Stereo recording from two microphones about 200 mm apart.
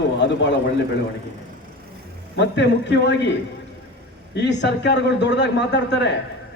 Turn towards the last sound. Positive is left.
turn(degrees=60)  # may be behind; listen again after turning